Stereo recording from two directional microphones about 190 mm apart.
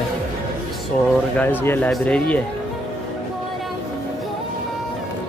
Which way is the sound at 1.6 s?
10° left (ahead or behind).